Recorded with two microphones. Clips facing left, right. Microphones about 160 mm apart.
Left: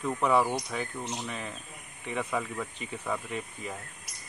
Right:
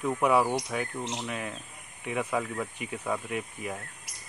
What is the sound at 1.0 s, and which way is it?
Speech, 20° right (ahead or behind).